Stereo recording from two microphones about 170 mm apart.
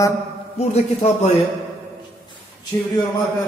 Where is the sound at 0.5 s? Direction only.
40° left (ahead or behind).